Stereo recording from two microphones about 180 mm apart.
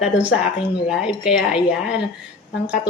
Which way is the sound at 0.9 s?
5° right (ahead or behind).